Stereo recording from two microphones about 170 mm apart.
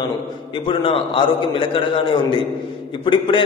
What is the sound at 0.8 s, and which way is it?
A man's voice, 30° left (ahead or behind).